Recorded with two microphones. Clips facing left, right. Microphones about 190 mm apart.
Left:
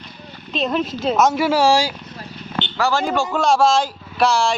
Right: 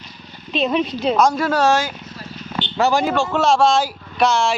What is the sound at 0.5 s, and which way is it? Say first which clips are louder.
Speech: right 2 dB; centre (ahead or behind).